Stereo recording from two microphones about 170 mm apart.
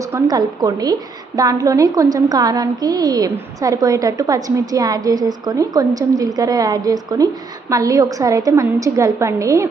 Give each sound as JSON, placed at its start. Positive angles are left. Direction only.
{"t": 0.0, "sound": "a woman's voice", "side_deg": -20}